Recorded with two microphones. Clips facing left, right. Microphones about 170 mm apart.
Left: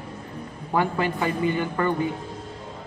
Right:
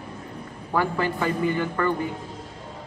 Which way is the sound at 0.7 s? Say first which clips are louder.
Left 1 dB; 20° left (ahead or behind).